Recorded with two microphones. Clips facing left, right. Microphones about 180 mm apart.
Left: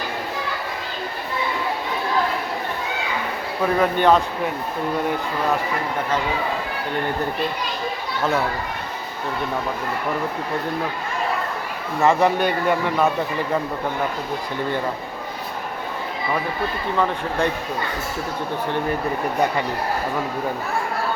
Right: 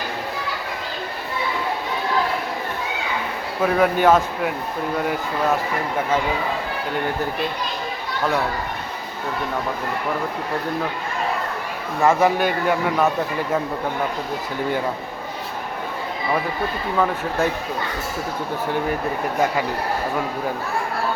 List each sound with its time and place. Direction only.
3.6 s a man's voice: 5° right (ahead or behind)
12.0 s a man's voice: centre (ahead or behind)
17.0 s a man's voice: 5° right (ahead or behind)